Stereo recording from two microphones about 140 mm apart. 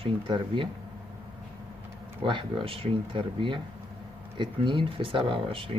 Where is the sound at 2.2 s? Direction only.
35° right (ahead or behind).